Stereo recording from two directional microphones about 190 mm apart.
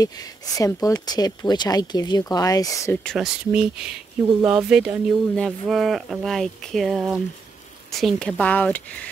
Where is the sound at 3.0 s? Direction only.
5° right (ahead or behind).